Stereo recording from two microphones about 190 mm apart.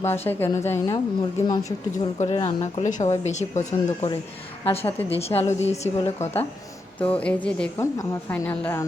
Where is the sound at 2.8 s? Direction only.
40° left (ahead or behind).